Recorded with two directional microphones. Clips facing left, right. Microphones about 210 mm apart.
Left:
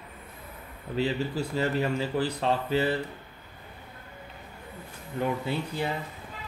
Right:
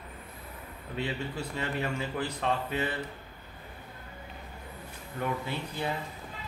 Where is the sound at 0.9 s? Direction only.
35° left (ahead or behind).